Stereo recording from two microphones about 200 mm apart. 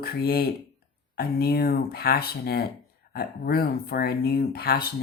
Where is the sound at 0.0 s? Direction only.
50° left (ahead or behind).